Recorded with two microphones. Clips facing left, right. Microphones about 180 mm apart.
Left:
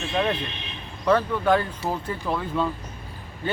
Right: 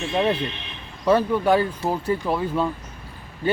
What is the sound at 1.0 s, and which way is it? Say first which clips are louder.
Speech: right 2 dB; 10° right (ahead or behind).